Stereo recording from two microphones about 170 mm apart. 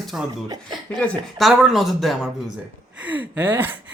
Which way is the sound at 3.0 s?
10° right (ahead or behind).